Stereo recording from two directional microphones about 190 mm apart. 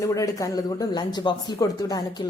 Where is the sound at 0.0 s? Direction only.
15° left (ahead or behind).